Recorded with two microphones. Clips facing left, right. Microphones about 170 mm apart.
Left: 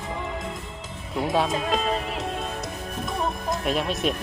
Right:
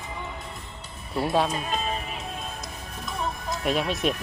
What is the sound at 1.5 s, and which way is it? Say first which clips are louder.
Speech: left 5 dB; 90° left.